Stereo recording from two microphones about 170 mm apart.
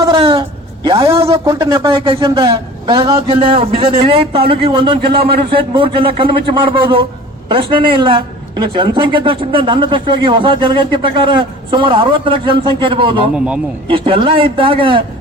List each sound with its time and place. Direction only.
0.0 s a sound: 30° right (ahead or behind)
1.5 s a man's voice: 30° right (ahead or behind)
13.3 s a man's voice: 5° right (ahead or behind)
13.9 s a man's voice: 30° right (ahead or behind)